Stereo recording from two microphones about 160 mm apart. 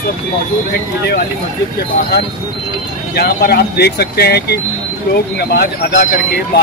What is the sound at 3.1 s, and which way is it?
Speech, 75° left (ahead or behind).